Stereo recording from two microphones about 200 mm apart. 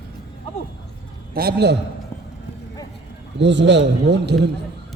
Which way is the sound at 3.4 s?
65° right (ahead or behind).